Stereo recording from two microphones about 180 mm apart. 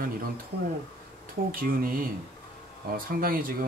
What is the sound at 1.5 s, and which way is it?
Speech, 50° right (ahead or behind).